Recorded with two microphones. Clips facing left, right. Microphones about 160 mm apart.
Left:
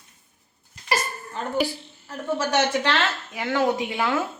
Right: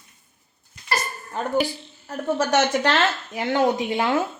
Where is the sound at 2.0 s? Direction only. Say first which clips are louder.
Right 3 dB; 45° right (ahead or behind).